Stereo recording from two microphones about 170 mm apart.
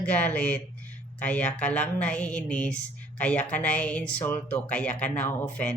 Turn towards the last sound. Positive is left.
turn(degrees=10)  # may be behind; listen again after turning